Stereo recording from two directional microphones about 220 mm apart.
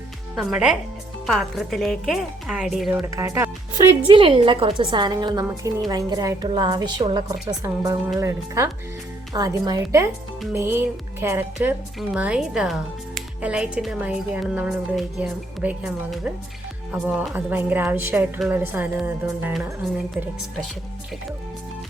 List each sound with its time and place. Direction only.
0.3 s speech: centre (ahead or behind)
3.2 s a woman's voice: 10° right (ahead or behind)
4.0 s a woman's voice: 25° right (ahead or behind); by 19.7 s 10° right (ahead or behind)